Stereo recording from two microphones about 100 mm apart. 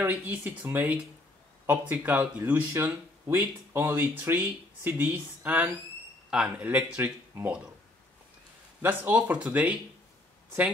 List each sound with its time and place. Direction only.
0.0 s speech: 20° right (ahead or behind)
8.8 s speech: 15° right (ahead or behind)